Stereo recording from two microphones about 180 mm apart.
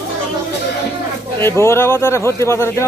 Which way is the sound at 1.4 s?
15° left (ahead or behind).